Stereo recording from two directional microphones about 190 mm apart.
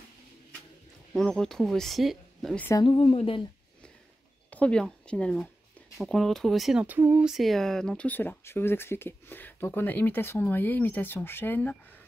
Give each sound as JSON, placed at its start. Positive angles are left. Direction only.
{"t": 1.1, "sound": "speech", "side_deg": 5}
{"t": 2.7, "sound": "speech", "side_deg": 25}
{"t": 4.5, "sound": "speech", "side_deg": 5}